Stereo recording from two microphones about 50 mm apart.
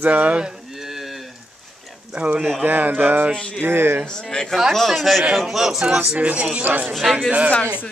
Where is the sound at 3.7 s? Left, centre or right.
Right.